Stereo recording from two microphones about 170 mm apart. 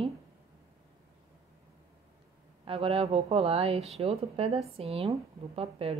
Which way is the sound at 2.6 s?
35° right (ahead or behind).